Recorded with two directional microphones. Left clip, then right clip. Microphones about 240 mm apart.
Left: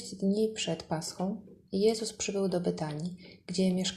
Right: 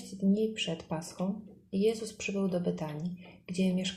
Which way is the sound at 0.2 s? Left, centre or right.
Centre.